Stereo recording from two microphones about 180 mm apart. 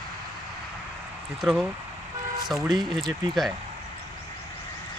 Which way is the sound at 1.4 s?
Centre (ahead or behind).